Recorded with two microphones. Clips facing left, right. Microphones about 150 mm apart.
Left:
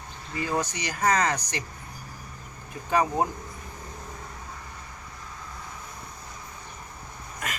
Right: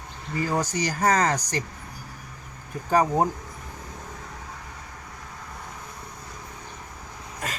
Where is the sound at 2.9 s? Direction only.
35° right (ahead or behind).